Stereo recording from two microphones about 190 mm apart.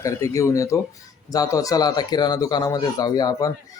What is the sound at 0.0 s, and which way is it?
Speech, 15° left (ahead or behind).